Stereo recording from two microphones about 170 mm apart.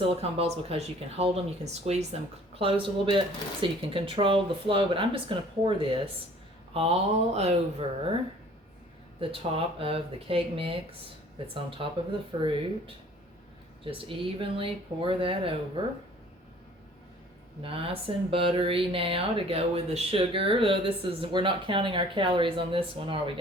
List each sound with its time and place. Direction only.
0.2 s speech: 35° right (ahead or behind)
9.2 s speech: 30° right (ahead or behind)
14.1 s speech: 30° right (ahead or behind)
17.6 s speech: 30° right (ahead or behind)